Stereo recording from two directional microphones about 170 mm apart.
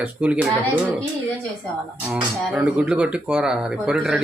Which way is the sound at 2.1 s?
5° right (ahead or behind).